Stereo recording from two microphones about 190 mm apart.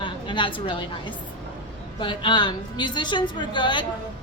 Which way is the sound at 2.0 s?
25° left (ahead or behind).